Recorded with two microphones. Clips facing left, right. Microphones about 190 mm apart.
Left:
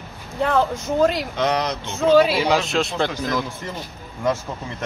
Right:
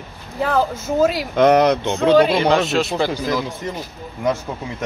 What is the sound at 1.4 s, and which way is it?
Speech, 55° right (ahead or behind).